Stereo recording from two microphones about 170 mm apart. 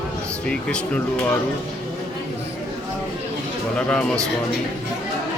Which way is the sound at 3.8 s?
5° left (ahead or behind).